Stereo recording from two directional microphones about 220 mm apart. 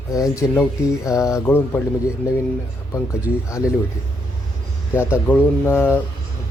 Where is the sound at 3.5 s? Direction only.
15° left (ahead or behind).